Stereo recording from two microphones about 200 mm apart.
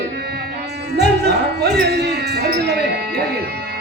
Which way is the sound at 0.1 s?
55° right (ahead or behind).